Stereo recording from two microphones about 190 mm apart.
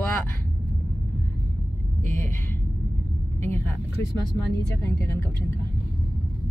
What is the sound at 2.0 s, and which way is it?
Speech, 15° left (ahead or behind).